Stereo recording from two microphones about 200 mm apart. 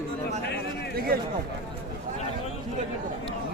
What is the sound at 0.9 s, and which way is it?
Speech, 50° right (ahead or behind).